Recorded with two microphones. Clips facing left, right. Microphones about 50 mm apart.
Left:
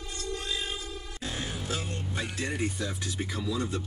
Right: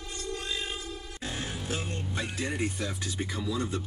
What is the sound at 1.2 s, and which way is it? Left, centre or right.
Music, right.